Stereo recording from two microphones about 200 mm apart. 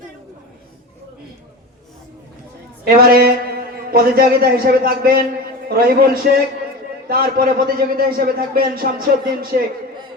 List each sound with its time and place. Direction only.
2.8 s a man's voice: 50° right (ahead or behind)